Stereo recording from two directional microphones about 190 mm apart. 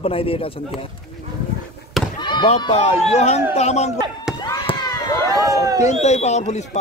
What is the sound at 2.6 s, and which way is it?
Speech, 25° left (ahead or behind).